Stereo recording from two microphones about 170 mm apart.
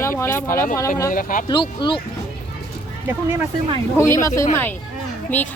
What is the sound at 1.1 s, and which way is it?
Speech, 55° left (ahead or behind).